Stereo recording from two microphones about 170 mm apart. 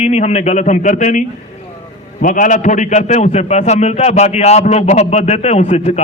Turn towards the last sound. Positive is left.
turn(degrees=40)  # may be behind; listen again after turning